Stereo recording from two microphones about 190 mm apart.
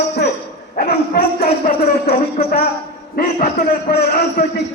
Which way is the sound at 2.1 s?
30° left (ahead or behind).